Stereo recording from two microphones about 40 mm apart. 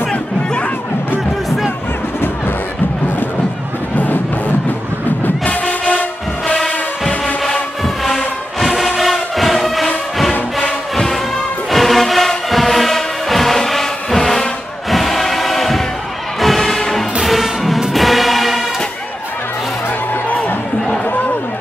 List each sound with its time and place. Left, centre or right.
3.9 s music: left
7.8 s music: centre
11.7 s music: centre
14.9 s a sound: centre
16.3 s music: centre